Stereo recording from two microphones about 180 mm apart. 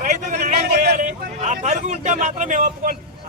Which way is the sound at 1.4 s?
40° right (ahead or behind).